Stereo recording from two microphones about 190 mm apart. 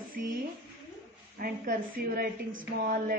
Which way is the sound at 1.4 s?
50° right (ahead or behind).